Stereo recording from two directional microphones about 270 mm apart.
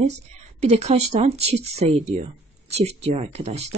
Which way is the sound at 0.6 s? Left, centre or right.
Right.